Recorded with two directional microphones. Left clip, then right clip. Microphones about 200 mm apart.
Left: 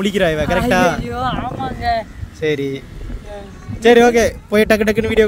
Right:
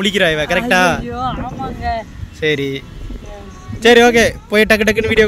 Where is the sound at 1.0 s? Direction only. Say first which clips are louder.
Left 1 dB; 30° left (ahead or behind).